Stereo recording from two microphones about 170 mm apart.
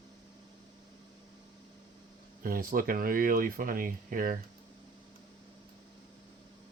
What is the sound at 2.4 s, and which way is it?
Speech, 55° right (ahead or behind).